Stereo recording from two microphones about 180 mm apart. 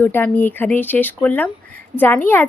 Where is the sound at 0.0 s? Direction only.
10° left (ahead or behind).